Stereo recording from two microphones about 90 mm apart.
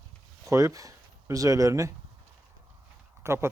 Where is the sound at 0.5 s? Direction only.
40° right (ahead or behind).